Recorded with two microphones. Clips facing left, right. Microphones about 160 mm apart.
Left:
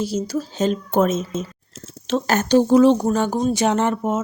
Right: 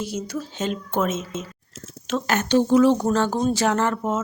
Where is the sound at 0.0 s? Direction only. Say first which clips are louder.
Left 5 dB; 35° left (ahead or behind).